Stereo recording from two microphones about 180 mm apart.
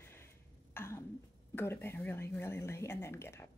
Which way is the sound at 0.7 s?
15° left (ahead or behind).